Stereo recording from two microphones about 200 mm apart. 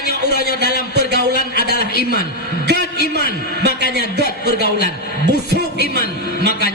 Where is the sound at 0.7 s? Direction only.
55° right (ahead or behind).